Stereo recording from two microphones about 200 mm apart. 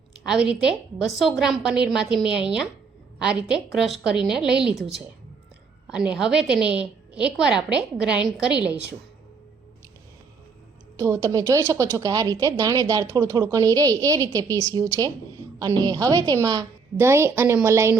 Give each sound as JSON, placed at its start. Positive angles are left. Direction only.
{"t": 0.2, "sound": "a woman's voice", "side_deg": -5}
{"t": 10.9, "sound": "speech", "side_deg": -15}